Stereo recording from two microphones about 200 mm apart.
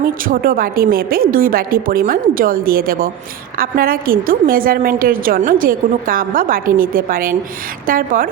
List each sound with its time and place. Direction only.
0.0 s a woman's voice: 45° right (ahead or behind)